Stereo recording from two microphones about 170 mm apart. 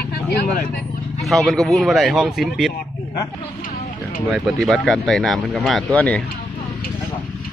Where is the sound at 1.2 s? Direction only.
Centre (ahead or behind).